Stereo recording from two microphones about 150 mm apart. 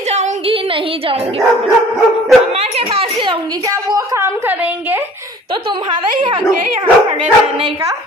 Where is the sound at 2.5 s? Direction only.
45° right (ahead or behind); by 5.4 s 20° right (ahead or behind).